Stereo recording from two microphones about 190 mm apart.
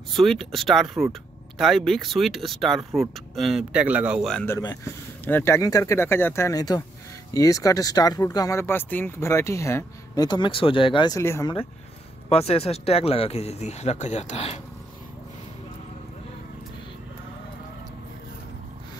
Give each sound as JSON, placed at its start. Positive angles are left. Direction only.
{"t": 0.1, "sound": "speech", "side_deg": 0}
{"t": 4.5, "sound": "speech", "side_deg": 15}
{"t": 12.3, "sound": "speech", "side_deg": 35}